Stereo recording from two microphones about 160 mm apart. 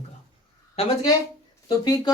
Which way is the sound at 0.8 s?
40° left (ahead or behind).